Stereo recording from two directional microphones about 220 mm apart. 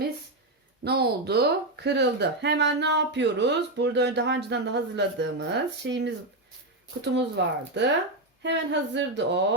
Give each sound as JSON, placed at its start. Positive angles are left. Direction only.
{"t": 0.9, "sound": "speech", "side_deg": -45}